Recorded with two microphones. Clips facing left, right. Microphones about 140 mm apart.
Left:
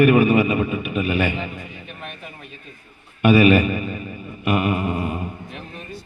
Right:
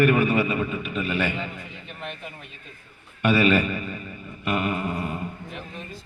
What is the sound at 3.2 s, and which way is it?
Speech, 15° left (ahead or behind).